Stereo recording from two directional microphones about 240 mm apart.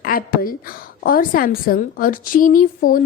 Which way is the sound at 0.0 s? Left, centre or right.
Left.